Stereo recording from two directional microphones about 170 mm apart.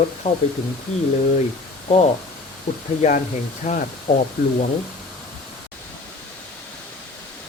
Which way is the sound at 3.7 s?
40° left (ahead or behind).